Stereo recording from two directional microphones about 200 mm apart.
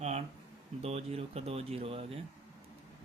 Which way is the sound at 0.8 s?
30° right (ahead or behind).